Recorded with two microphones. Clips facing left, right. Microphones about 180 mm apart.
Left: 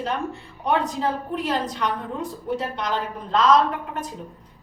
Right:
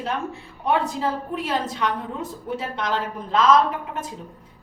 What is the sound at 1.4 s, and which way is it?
Speech, centre (ahead or behind).